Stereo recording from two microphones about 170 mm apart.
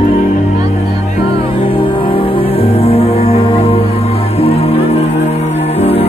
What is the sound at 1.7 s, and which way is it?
Music, 30° left (ahead or behind).